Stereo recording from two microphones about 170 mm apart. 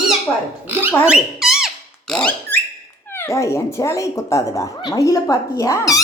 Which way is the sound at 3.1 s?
15° left (ahead or behind).